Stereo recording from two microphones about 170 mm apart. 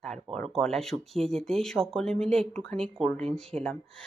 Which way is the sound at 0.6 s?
Centre (ahead or behind).